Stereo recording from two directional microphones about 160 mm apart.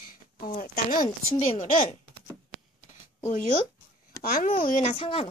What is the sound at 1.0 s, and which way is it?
Speech, 40° left (ahead or behind).